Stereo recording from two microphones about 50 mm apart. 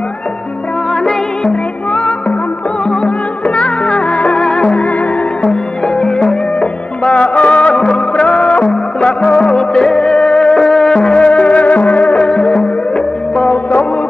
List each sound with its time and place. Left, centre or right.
1.0 s music: centre
2.9 s music: left